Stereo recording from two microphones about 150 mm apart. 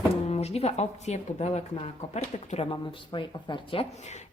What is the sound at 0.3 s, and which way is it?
Speech, 45° left (ahead or behind).